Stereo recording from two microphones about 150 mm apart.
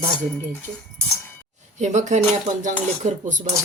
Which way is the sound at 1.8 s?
50° right (ahead or behind).